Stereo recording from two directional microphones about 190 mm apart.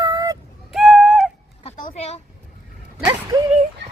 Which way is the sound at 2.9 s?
15° right (ahead or behind).